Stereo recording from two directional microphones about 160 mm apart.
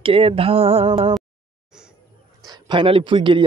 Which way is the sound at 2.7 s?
35° right (ahead or behind).